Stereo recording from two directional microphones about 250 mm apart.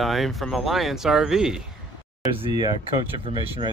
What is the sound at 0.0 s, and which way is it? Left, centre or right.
Speech, centre.